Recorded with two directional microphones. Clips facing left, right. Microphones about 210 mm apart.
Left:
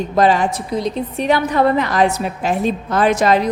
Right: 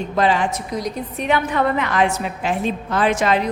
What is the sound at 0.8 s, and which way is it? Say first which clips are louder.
A woman's voice: left 6 dB; 25° left (ahead or behind).